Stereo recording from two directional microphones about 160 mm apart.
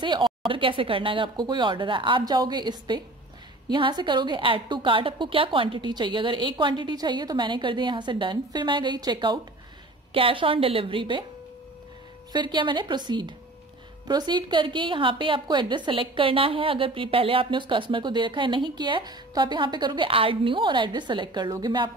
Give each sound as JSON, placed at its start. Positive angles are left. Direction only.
{"t": 0.0, "sound": "a woman's voice", "side_deg": -25}
{"t": 12.3, "sound": "a woman's voice", "side_deg": -30}